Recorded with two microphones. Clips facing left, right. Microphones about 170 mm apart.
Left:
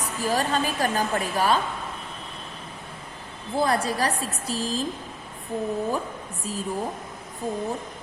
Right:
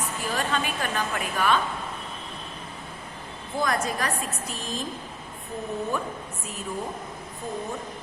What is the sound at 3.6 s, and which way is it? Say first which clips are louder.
A woman's voice: left 3 dB; 35° left (ahead or behind).